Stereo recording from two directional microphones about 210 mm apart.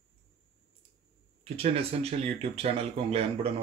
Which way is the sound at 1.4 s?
30° right (ahead or behind).